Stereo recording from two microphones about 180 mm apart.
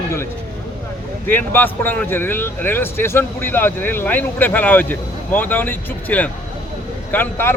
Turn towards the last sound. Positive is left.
turn(degrees=10)  # may be behind; listen again after turning